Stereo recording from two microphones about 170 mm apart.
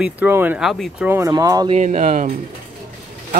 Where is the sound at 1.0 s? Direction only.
15° right (ahead or behind).